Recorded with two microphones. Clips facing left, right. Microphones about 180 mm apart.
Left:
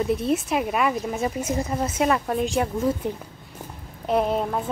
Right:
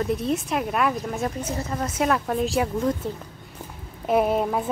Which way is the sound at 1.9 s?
Centre (ahead or behind).